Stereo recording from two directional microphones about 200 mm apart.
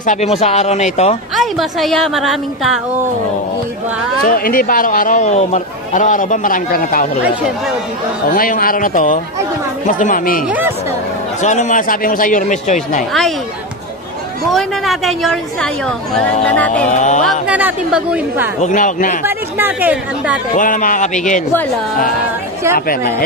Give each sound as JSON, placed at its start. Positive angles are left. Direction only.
{"t": 0.0, "sound": "speech", "side_deg": 35}
{"t": 1.3, "sound": "a woman's voice", "side_deg": 0}
{"t": 4.2, "sound": "speech", "side_deg": 45}
{"t": 8.4, "sound": "speech", "side_deg": 45}
{"t": 11.4, "sound": "speech", "side_deg": 35}
{"t": 14.5, "sound": "a woman's voice", "side_deg": 0}
{"t": 16.9, "sound": "speech", "side_deg": 35}
{"t": 17.2, "sound": "speech", "side_deg": -5}
{"t": 18.6, "sound": "speech", "side_deg": 40}
{"t": 19.2, "sound": "speech", "side_deg": -10}
{"t": 20.5, "sound": "speech", "side_deg": 40}
{"t": 22.8, "sound": "speech", "side_deg": 45}